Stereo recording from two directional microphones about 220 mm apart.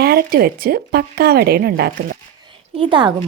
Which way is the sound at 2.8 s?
20° right (ahead or behind).